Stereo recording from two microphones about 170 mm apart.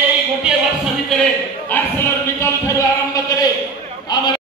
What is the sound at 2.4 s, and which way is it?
Speech, 15° left (ahead or behind).